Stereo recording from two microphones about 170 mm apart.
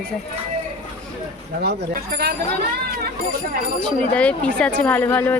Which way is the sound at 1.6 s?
60° right (ahead or behind).